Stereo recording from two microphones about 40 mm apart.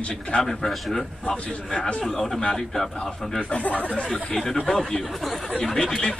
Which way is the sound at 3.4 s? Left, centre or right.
Left.